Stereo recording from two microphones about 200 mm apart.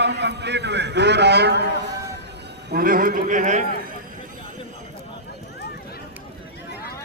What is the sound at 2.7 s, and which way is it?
Speech, 45° right (ahead or behind).